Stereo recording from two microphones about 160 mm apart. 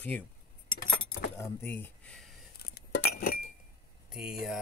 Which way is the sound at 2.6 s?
85° left.